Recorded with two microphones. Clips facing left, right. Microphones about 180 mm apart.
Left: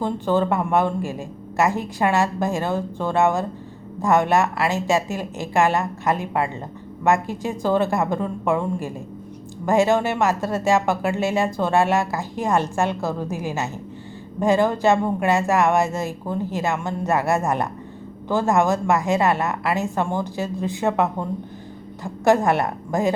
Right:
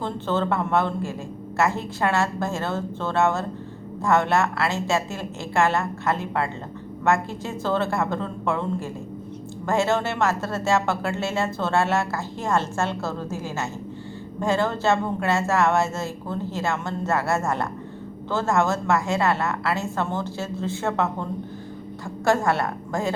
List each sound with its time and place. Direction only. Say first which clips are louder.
0.0 s speech: left 4 dB; 15° left (ahead or behind)